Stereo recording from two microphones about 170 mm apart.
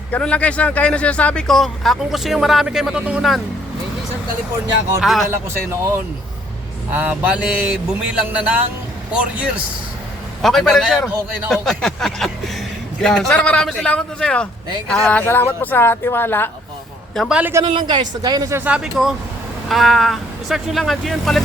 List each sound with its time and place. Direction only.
0.1 s speech: 5° left (ahead or behind)
4.9 s speech: centre (ahead or behind)
6.9 s a sound: 10° right (ahead or behind)
10.4 s speech: centre (ahead or behind)
17.2 s a sound: 5° right (ahead or behind)
17.7 s a woman's voice: 25° right (ahead or behind); by 21.4 s centre (ahead or behind)